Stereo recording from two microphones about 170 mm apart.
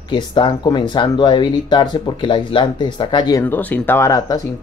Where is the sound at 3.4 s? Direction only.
10° left (ahead or behind).